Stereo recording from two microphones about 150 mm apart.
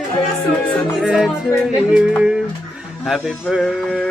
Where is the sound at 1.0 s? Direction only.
Centre (ahead or behind).